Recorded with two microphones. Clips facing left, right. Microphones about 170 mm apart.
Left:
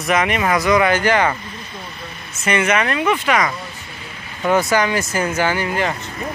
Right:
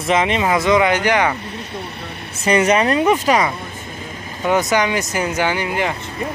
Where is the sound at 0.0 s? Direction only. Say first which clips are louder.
Right 1 dB; 25° right (ahead or behind).